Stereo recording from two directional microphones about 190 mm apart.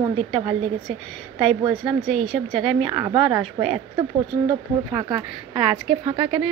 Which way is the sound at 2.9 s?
15° right (ahead or behind).